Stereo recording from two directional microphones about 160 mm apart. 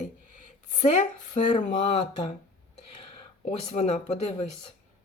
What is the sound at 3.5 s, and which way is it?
Speech, 45° left (ahead or behind).